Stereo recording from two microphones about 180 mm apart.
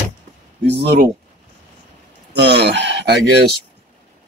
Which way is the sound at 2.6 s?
80° right.